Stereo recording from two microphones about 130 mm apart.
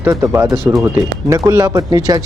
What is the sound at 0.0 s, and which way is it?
Speech, 20° right (ahead or behind).